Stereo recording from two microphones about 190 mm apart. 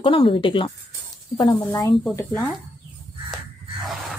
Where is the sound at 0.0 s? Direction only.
25° left (ahead or behind).